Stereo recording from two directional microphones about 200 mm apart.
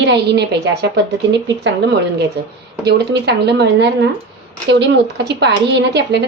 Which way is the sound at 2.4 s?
55° right (ahead or behind).